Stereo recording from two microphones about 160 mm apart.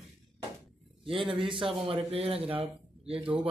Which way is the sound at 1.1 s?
35° right (ahead or behind).